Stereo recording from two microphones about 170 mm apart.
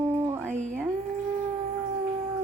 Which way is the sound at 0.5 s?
45° right (ahead or behind).